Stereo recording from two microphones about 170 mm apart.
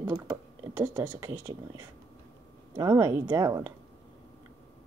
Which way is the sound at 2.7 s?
20° right (ahead or behind).